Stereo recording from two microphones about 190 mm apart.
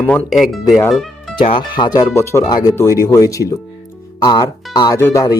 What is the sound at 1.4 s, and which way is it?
Speech, 25° left (ahead or behind).